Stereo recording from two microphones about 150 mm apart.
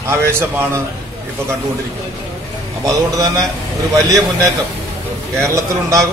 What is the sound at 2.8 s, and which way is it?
A man's voice, 25° right (ahead or behind).